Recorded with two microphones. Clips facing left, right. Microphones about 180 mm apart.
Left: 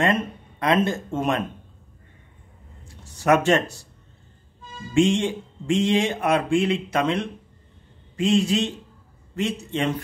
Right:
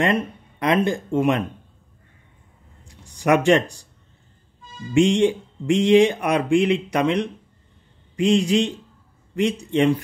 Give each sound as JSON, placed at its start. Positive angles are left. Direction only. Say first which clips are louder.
{"t": 0.0, "sound": "speech", "louder": "right 1 dB", "side_deg": -20}
{"t": 2.8, "sound": "a sound", "louder": "right 3 dB", "side_deg": -15}
{"t": 4.9, "sound": "speech", "louder": "right 3 dB", "side_deg": -15}